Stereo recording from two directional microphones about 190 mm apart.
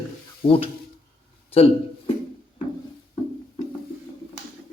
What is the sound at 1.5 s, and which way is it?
Speech, 30° left (ahead or behind).